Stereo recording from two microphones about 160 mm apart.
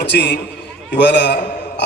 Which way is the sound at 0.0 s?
90° left.